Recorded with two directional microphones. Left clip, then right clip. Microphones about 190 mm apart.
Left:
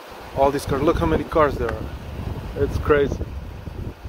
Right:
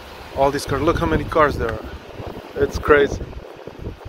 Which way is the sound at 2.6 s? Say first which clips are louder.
Right 4 dB; 20° right (ahead or behind).